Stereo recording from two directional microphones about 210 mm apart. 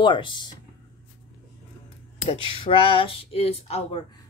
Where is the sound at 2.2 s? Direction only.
25° left (ahead or behind).